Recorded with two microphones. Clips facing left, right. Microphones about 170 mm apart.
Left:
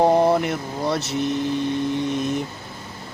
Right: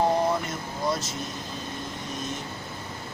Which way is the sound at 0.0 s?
65° left (ahead or behind).